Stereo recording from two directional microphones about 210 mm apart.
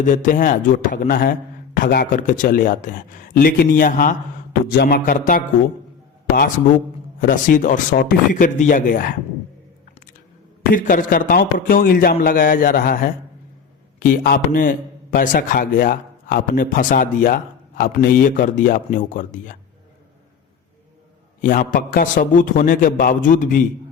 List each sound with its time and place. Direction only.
0.0 s a man's voice: 35° left (ahead or behind)
7.2 s a man's voice: 40° left (ahead or behind)
10.7 s a man's voice: 40° left (ahead or behind)
21.4 s a man's voice: 40° left (ahead or behind)